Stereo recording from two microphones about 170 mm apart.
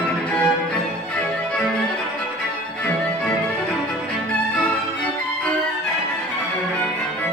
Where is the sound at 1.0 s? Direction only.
5° left (ahead or behind).